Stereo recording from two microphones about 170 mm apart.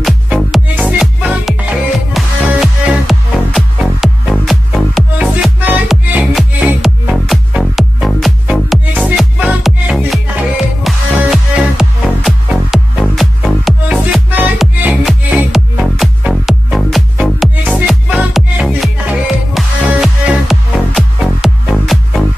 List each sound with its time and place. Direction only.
0.0 s music: centre (ahead or behind)